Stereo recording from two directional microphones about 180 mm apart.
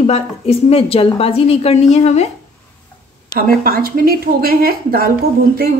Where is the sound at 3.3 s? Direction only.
55° right (ahead or behind).